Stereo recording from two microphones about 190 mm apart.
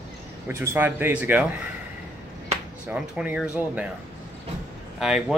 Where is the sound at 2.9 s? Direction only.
5° right (ahead or behind).